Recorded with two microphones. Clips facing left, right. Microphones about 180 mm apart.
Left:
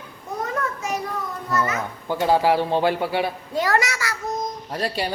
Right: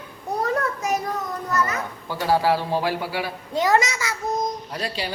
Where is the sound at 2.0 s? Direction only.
20° left (ahead or behind).